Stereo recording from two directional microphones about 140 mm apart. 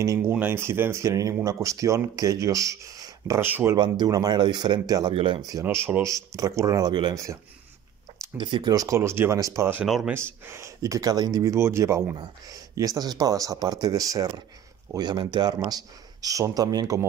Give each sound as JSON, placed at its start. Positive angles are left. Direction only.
{"t": 0.0, "sound": "speech", "side_deg": -25}
{"t": 4.0, "sound": "speech", "side_deg": -30}
{"t": 5.5, "sound": "speech", "side_deg": -20}
{"t": 8.4, "sound": "speech", "side_deg": -35}
{"t": 9.8, "sound": "speech", "side_deg": 0}
{"t": 10.4, "sound": "speech", "side_deg": -20}